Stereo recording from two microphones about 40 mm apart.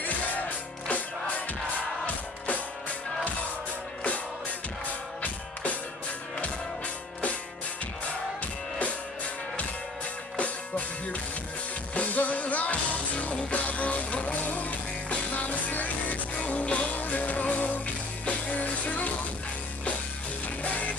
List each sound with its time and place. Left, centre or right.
0.8 s music: left
11.9 s music: left
20.6 s music: left